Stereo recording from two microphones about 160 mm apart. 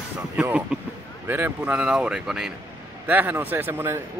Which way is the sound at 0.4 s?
10° right (ahead or behind).